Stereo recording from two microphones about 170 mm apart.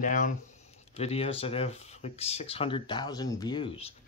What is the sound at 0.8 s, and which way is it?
Speech, 40° left (ahead or behind).